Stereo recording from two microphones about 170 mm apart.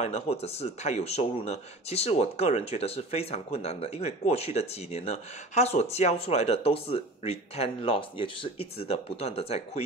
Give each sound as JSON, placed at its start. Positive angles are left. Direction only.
{"t": 0.0, "sound": "speech", "side_deg": 40}